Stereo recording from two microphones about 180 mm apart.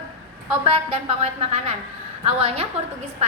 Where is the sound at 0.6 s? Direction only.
35° right (ahead or behind).